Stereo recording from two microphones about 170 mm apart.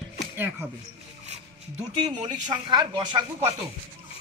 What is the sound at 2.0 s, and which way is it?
Speech, 25° right (ahead or behind).